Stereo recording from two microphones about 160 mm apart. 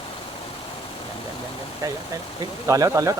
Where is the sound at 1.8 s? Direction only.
20° right (ahead or behind).